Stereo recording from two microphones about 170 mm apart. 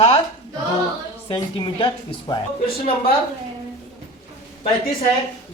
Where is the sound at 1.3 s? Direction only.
30° left (ahead or behind).